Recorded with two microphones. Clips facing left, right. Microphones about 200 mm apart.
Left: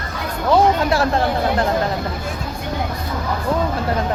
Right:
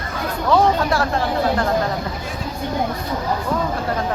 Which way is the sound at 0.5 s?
25° left (ahead or behind).